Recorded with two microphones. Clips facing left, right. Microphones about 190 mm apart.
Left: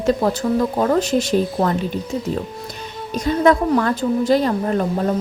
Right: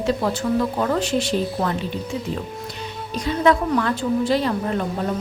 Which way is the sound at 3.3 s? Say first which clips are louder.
Left 3 dB; 45° left (ahead or behind).